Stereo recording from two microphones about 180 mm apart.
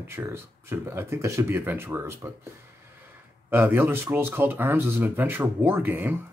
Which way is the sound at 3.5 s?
10° right (ahead or behind).